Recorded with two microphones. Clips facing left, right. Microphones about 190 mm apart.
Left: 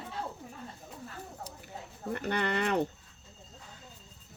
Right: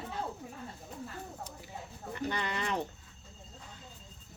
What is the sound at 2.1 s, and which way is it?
Speech, 60° left (ahead or behind).